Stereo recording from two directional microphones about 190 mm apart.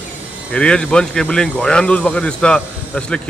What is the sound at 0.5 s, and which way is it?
Speech, 5° left (ahead or behind).